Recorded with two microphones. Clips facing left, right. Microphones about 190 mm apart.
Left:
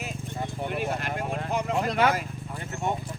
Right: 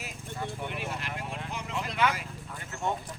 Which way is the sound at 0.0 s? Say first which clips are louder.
Left 5 dB; 25° left (ahead or behind).